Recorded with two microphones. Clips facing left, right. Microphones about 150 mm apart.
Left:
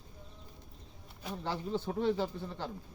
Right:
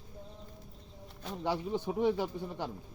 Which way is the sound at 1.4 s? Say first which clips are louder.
Right 3 dB; 15° right (ahead or behind).